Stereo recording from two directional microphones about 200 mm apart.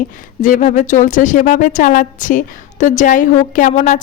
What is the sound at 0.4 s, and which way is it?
A woman's voice, 40° left (ahead or behind).